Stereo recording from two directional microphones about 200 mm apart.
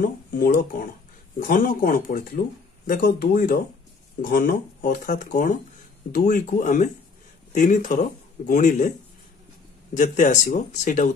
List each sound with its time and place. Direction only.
0.0 s speech: 45° left (ahead or behind)
9.9 s speech: 40° left (ahead or behind)